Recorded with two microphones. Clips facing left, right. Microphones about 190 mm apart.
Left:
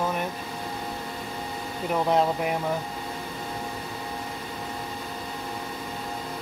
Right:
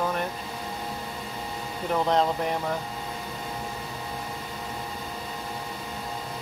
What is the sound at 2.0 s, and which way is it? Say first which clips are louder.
Speech: left 2 dB; 10° left (ahead or behind).